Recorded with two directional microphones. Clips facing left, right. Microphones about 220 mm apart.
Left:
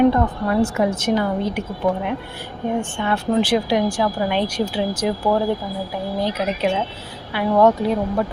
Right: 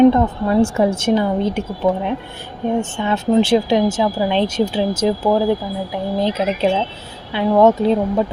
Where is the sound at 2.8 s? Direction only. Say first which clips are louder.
Right 2 dB; 20° right (ahead or behind).